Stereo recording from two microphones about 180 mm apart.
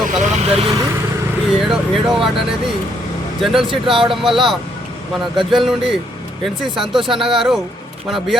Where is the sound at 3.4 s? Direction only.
Centre (ahead or behind).